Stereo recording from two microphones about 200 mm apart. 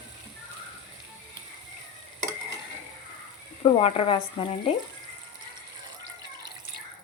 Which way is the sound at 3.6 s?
30° left (ahead or behind).